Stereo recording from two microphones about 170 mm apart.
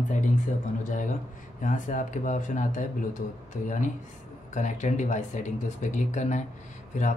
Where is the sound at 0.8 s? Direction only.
50° left (ahead or behind).